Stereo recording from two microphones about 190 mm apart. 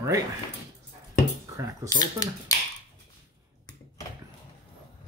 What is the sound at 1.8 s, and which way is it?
Speech, 20° left (ahead or behind).